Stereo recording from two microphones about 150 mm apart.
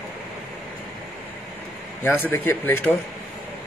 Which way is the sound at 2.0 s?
15° left (ahead or behind).